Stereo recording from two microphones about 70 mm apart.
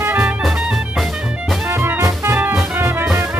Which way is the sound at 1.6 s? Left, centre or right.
Right.